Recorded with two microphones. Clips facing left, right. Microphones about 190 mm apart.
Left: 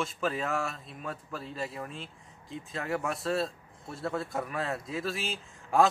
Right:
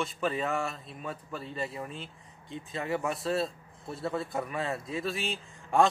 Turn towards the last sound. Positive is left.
turn(degrees=0)  # may be behind; listen again after turning